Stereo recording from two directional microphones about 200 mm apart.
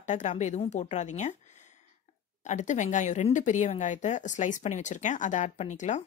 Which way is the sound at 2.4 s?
35° left (ahead or behind).